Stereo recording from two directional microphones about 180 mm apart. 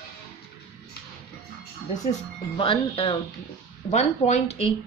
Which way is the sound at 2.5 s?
30° left (ahead or behind).